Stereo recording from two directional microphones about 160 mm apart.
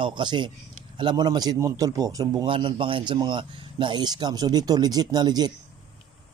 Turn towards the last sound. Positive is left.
turn(degrees=-25)  # may be behind; listen again after turning